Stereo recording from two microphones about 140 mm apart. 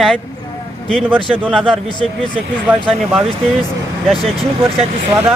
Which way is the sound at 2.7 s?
5° right (ahead or behind).